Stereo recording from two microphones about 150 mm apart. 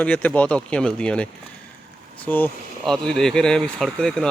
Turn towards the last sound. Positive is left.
turn(degrees=5)  # may be behind; listen again after turning